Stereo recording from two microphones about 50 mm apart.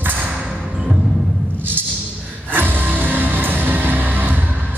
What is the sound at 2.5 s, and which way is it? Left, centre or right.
Music, right.